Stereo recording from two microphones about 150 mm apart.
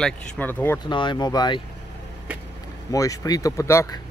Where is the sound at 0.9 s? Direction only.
30° left (ahead or behind).